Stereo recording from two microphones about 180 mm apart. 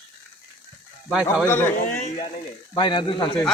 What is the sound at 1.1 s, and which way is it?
Speech, centre (ahead or behind).